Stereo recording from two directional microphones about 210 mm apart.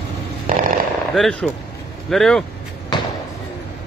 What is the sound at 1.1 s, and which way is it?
Speech, centre (ahead or behind).